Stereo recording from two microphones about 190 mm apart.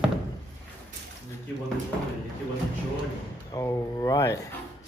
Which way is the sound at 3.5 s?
20° left (ahead or behind).